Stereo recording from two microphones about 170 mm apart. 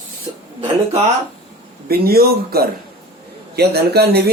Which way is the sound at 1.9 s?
65° right (ahead or behind).